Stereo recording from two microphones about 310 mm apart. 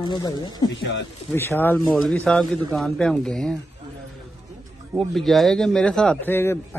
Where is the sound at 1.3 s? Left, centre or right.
Centre.